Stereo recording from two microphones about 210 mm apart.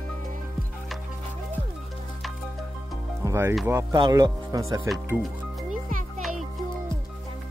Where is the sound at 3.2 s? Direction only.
10° right (ahead or behind).